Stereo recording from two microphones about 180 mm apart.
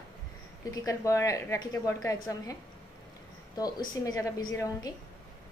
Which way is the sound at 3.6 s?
20° left (ahead or behind).